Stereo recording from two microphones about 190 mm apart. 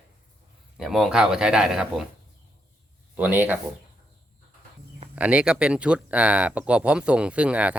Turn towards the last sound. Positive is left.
turn(degrees=-5)  # may be behind; listen again after turning